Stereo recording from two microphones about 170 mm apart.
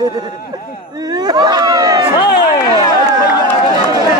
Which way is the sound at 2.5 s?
25° left (ahead or behind).